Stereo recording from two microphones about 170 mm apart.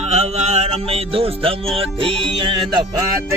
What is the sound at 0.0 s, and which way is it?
Music, 40° right (ahead or behind).